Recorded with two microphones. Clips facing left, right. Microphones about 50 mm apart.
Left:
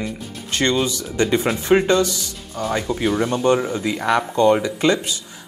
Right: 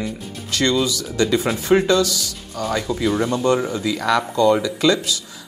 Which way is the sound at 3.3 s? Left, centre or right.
Left.